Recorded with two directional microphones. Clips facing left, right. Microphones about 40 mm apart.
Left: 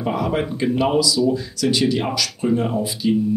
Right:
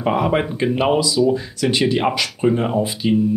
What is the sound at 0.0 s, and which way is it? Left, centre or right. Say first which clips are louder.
Speech: right 3 dB; right.